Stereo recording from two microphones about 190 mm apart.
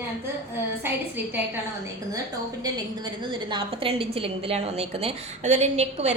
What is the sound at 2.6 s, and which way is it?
A woman's voice, 25° right (ahead or behind).